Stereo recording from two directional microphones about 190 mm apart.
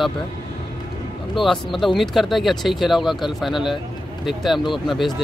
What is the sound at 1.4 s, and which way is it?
Speech, centre (ahead or behind).